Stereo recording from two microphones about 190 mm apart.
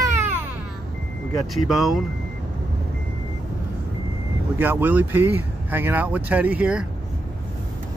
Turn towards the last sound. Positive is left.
turn(degrees=-5)  # may be behind; listen again after turning